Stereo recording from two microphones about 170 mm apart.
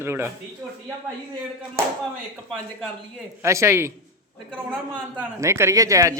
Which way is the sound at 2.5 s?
Centre (ahead or behind).